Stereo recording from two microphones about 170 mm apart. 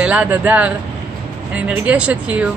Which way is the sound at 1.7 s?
5° right (ahead or behind).